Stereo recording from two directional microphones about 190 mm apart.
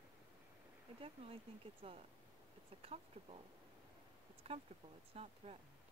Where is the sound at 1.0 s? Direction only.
30° right (ahead or behind).